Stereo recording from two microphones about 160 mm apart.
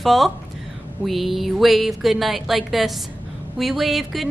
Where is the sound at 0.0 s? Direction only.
Centre (ahead or behind).